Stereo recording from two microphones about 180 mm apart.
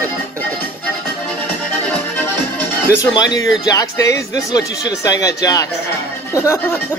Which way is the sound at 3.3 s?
20° left (ahead or behind).